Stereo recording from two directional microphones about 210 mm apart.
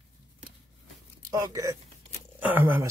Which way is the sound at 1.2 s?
15° right (ahead or behind).